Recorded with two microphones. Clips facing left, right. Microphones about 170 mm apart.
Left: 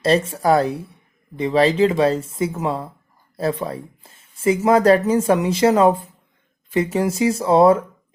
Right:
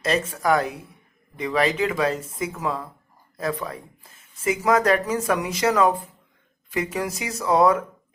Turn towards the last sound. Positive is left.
turn(degrees=30)  # may be behind; listen again after turning